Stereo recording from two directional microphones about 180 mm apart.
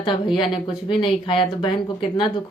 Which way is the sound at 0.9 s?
30° left (ahead or behind).